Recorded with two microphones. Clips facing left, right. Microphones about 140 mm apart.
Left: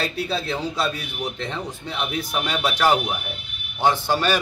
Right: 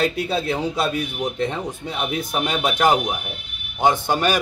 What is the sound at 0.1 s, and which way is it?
Speech, 20° right (ahead or behind).